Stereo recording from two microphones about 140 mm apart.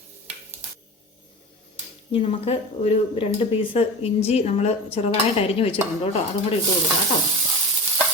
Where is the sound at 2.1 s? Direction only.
45° left (ahead or behind).